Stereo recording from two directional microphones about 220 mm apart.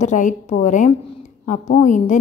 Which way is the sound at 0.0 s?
35° left (ahead or behind).